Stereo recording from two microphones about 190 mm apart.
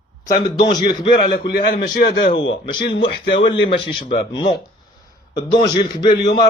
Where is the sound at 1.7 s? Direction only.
45° left (ahead or behind).